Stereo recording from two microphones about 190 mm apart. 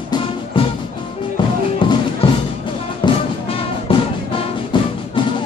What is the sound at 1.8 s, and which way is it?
Music, 25° left (ahead or behind).